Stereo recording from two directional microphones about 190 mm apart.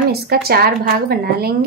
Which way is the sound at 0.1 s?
55° right (ahead or behind).